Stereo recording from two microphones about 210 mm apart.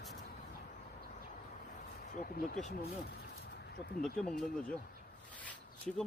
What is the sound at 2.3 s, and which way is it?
Speech, 35° left (ahead or behind).